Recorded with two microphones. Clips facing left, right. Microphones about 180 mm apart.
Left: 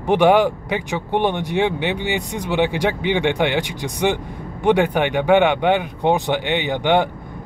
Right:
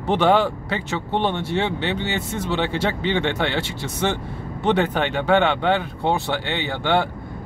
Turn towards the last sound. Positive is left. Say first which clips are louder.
# left 4 dB
turn(degrees=15)  # may be behind; listen again after turning